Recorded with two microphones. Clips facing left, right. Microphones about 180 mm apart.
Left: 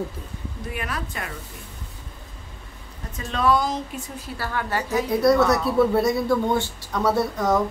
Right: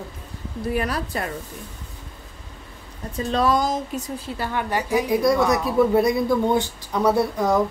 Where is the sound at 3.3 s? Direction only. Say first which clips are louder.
Right 1 dB; 40° right (ahead or behind).